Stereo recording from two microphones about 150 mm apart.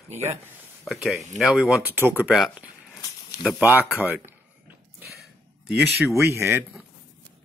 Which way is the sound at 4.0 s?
10° right (ahead or behind).